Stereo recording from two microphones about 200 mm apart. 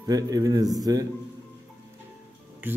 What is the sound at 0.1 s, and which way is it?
Speech, 20° right (ahead or behind).